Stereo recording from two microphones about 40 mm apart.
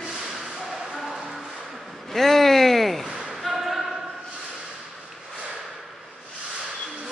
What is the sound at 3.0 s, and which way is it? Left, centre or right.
A capella, centre.